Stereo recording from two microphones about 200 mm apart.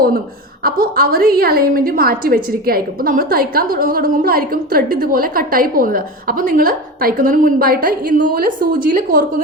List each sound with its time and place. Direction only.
0.6 s a woman's voice: 45° right (ahead or behind)